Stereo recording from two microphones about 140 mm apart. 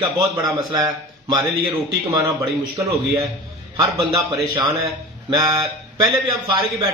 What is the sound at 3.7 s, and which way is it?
A man's voice, 30° right (ahead or behind).